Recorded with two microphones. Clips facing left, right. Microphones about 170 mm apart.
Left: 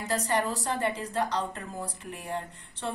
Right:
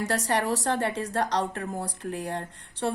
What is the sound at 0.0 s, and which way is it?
Speech, 75° right (ahead or behind).